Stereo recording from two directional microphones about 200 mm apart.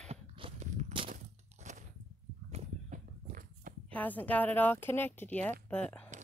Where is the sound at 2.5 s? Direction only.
35° right (ahead or behind).